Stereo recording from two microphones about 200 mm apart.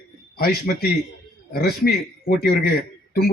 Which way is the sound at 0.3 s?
50° left (ahead or behind).